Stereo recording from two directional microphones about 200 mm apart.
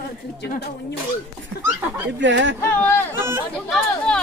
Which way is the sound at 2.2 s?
65° right (ahead or behind).